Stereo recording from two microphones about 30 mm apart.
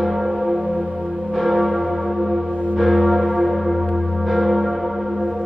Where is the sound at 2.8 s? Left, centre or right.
Centre.